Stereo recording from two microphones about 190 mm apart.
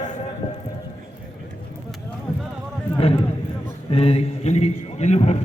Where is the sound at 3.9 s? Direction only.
30° left (ahead or behind).